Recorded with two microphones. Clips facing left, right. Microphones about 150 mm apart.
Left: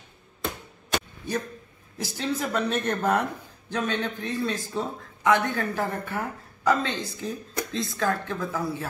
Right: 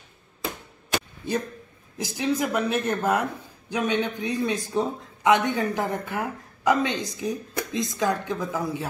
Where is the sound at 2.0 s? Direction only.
15° right (ahead or behind).